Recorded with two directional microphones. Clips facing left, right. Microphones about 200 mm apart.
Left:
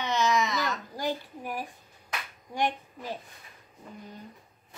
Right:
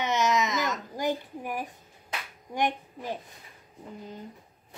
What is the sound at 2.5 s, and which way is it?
Speech, 15° right (ahead or behind).